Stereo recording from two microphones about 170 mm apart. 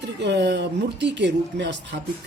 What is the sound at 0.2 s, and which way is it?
A woman's voice, 90° right.